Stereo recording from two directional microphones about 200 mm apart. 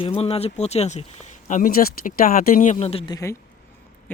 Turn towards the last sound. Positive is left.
turn(degrees=30)  # may be behind; listen again after turning